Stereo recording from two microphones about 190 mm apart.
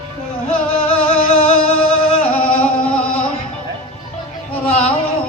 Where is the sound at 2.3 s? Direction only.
5° left (ahead or behind).